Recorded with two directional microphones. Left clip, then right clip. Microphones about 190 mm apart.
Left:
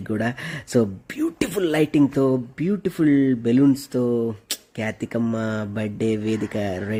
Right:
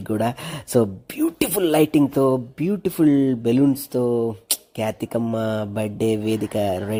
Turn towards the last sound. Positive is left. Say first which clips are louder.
# right 4 dB
turn(degrees=0)  # may be behind; listen again after turning